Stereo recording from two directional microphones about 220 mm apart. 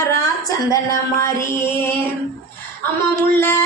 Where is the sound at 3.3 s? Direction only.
10° left (ahead or behind).